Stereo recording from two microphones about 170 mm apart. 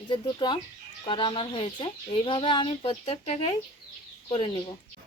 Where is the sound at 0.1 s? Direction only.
25° left (ahead or behind).